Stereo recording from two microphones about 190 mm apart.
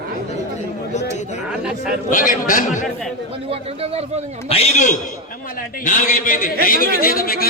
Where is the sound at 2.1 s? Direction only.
45° left (ahead or behind).